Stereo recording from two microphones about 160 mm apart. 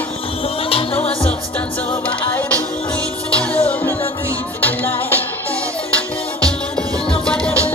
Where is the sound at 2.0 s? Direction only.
10° left (ahead or behind).